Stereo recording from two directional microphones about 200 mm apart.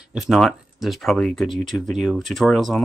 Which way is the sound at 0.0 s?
5° right (ahead or behind).